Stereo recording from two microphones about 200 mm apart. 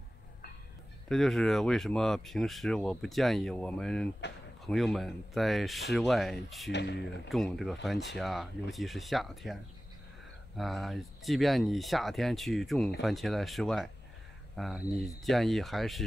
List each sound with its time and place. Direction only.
1.0 s speech: centre (ahead or behind)
6.7 s speech: 60° left (ahead or behind)
7.2 s speech: centre (ahead or behind)
10.6 s speech: centre (ahead or behind)